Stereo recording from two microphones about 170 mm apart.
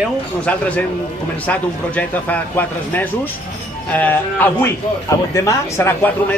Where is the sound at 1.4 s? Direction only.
10° left (ahead or behind).